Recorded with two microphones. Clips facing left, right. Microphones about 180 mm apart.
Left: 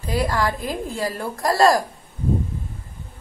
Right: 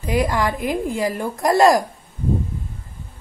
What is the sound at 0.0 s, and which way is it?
A woman's voice, 20° right (ahead or behind).